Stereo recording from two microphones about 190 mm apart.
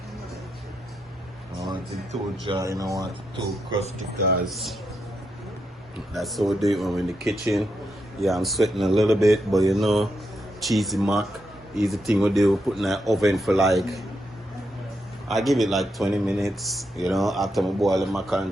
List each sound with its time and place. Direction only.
2.4 s speech: 20° right (ahead or behind)
4.4 s speech: centre (ahead or behind)
6.1 s speech: centre (ahead or behind)
15.3 s speech: centre (ahead or behind)